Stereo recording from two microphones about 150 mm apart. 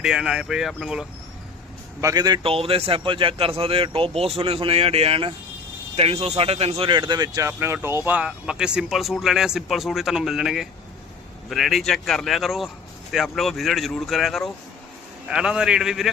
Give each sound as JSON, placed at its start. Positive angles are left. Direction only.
{"t": 0.0, "sound": "speech", "side_deg": -5}
{"t": 2.0, "sound": "a man's voice", "side_deg": -25}